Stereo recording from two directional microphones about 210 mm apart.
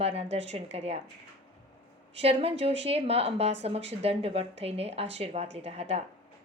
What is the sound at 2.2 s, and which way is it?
A woman's voice, 30° right (ahead or behind).